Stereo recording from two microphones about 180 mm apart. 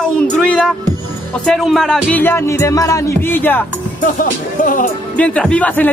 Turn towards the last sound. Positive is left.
turn(degrees=10)  # may be behind; listen again after turning